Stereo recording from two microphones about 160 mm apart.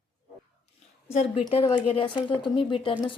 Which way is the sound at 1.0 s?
40° left (ahead or behind).